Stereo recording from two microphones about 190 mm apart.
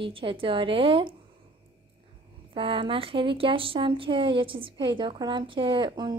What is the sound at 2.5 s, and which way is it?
A woman's voice, 25° right (ahead or behind).